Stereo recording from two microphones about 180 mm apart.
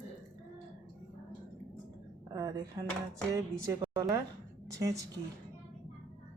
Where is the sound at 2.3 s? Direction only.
20° right (ahead or behind).